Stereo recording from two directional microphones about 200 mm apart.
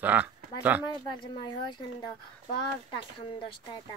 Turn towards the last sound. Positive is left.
turn(degrees=25)  # may be behind; listen again after turning